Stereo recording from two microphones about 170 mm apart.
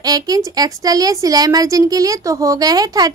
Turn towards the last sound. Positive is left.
turn(degrees=-20)  # may be behind; listen again after turning